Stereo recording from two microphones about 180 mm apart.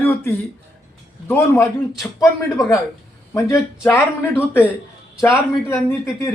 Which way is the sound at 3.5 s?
10° left (ahead or behind).